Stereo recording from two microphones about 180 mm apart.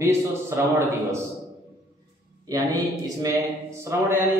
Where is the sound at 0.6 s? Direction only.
10° right (ahead or behind).